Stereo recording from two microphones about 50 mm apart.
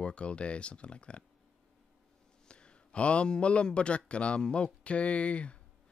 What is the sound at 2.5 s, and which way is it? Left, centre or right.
A man's voice, centre.